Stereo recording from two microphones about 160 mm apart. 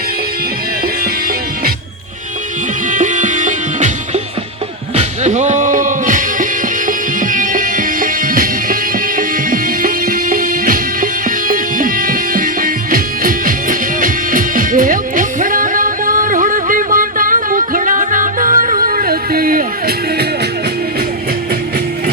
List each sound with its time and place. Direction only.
2.9 s music: 50° right (ahead or behind)